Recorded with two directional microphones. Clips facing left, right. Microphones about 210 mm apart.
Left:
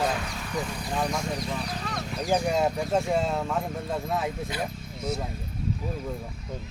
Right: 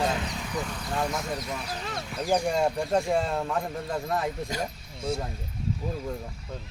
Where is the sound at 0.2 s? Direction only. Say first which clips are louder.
Right 2 dB; 20° right (ahead or behind).